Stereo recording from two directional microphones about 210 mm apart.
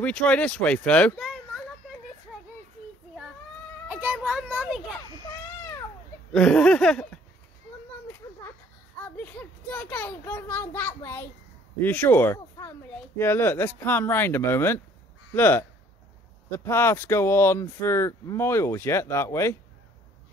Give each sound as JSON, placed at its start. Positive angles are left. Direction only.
{"t": 0.0, "sound": "speech", "side_deg": 5}
{"t": 3.9, "sound": "a child's voice", "side_deg": -5}
{"t": 6.3, "sound": "speech", "side_deg": 5}
{"t": 9.0, "sound": "speech", "side_deg": 10}